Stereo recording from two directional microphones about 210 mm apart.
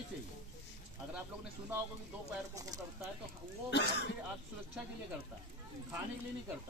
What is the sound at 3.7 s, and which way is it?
Speech, 55° left (ahead or behind).